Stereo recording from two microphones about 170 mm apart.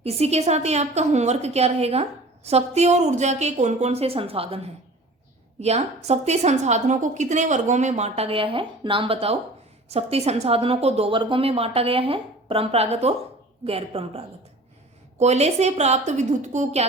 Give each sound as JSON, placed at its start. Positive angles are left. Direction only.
{"t": 0.0, "sound": "a woman's voice", "side_deg": -40}